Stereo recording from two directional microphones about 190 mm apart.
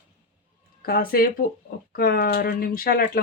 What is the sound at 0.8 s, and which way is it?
Speech, 50° left (ahead or behind).